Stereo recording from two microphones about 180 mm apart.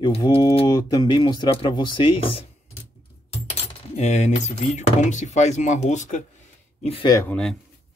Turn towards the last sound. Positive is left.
turn(degrees=15)  # may be behind; listen again after turning